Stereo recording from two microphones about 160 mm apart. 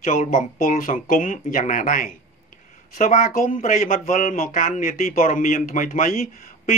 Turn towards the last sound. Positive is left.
turn(degrees=55)  # may be behind; listen again after turning